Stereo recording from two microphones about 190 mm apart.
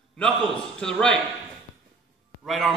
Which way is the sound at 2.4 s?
Centre (ahead or behind).